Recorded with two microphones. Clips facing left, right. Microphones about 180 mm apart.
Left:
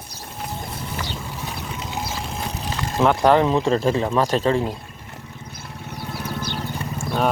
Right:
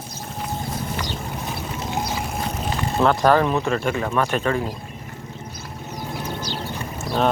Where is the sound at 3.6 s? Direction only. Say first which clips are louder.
Left 3 dB; 30° left (ahead or behind).